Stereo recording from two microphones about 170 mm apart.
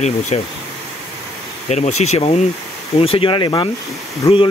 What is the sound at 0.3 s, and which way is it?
Speech, 35° left (ahead or behind).